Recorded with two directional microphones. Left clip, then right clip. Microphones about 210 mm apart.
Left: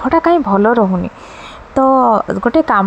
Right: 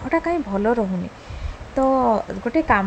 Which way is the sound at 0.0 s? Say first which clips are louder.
Left 10 dB; 15° left (ahead or behind).